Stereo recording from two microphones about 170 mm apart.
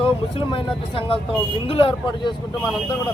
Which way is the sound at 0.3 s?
30° left (ahead or behind).